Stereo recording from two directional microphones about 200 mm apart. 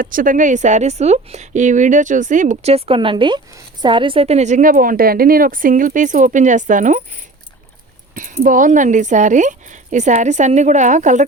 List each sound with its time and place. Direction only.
0.0 s speech: 45° right (ahead or behind)
8.1 s speech: 40° right (ahead or behind)